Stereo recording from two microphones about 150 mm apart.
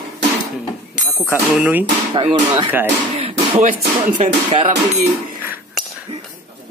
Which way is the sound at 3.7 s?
55° right (ahead or behind).